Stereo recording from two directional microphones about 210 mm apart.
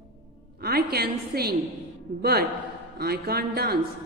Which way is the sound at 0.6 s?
45° right (ahead or behind).